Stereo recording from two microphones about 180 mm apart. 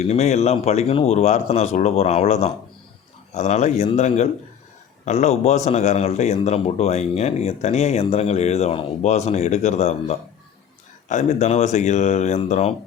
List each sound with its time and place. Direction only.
0.0 s a man's voice: 40° left (ahead or behind)